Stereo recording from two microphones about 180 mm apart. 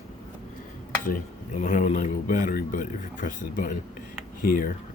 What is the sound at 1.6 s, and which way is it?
A man's voice, 45° left (ahead or behind).